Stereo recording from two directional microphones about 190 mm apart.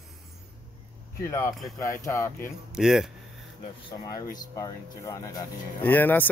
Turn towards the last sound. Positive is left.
turn(degrees=10)  # may be behind; listen again after turning